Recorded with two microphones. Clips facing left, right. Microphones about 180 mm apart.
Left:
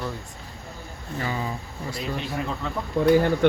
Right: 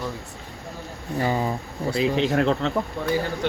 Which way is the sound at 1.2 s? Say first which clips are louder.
Right 6 dB; 40° right (ahead or behind).